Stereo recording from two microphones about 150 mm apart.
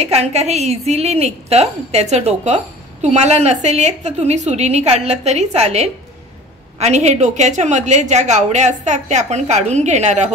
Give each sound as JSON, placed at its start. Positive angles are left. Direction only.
{"t": 0.0, "sound": "a woman's voice", "side_deg": -45}